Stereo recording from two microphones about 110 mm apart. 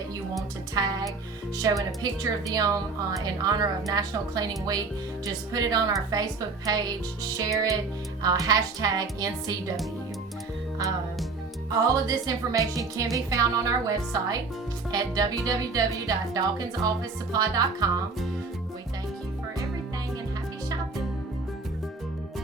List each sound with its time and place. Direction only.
0.7 s music: 35° right (ahead or behind)
1.5 s speech: 35° right (ahead or behind)
11.7 s speech: 35° right (ahead or behind)